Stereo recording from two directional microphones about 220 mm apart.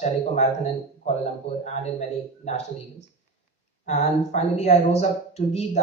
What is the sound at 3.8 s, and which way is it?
A man's voice, 35° left (ahead or behind).